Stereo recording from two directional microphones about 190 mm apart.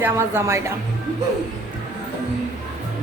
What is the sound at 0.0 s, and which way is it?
Speech, 10° right (ahead or behind).